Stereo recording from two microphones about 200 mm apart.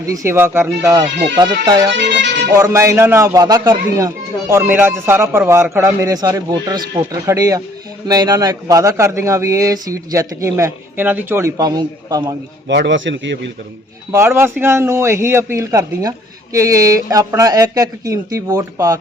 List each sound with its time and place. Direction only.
0.1 s a child's voice: 15° right (ahead or behind)
12.6 s a man's voice: 60° right (ahead or behind)
14.1 s a child's voice: 15° right (ahead or behind)